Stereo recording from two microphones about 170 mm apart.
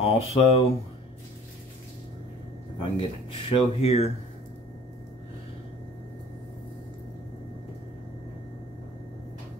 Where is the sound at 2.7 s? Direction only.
30° left (ahead or behind).